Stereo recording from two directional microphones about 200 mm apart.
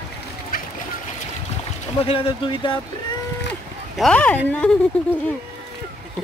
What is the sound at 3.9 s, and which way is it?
Speech, 5° left (ahead or behind).